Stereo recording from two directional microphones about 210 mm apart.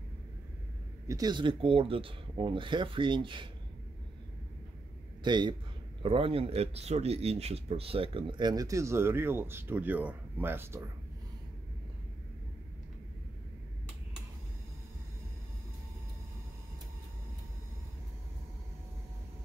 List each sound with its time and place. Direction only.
1.0 s speech: 15° right (ahead or behind)
5.2 s speech: 20° right (ahead or behind)